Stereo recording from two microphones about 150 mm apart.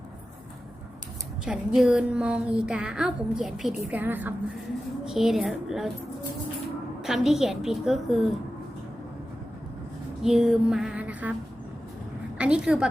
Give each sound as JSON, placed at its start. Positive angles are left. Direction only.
{"t": 1.5, "sound": "a woman's voice", "side_deg": -5}
{"t": 7.0, "sound": "a woman's voice", "side_deg": 0}
{"t": 10.2, "sound": "a sound", "side_deg": -5}
{"t": 12.4, "sound": "a woman's voice", "side_deg": -5}